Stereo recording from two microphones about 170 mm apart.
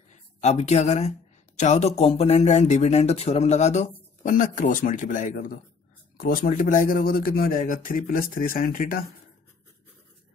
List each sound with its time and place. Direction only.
0.4 s speech: 40° left (ahead or behind)